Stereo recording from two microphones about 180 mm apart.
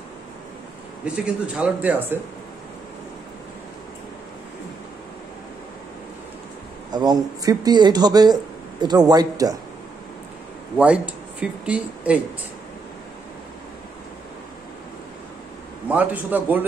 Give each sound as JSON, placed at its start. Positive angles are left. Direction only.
{"t": 1.0, "sound": "speech", "side_deg": -5}
{"t": 6.9, "sound": "a man's voice", "side_deg": -25}
{"t": 10.8, "sound": "speech", "side_deg": -5}
{"t": 15.9, "sound": "speech", "side_deg": -10}